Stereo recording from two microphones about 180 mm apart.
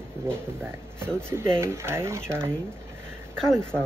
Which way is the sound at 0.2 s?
15° right (ahead or behind).